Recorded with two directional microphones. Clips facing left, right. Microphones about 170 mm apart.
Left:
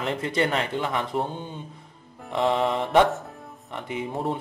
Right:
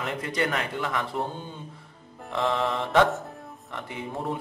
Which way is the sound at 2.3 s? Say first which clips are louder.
Left 3 dB; 20° left (ahead or behind).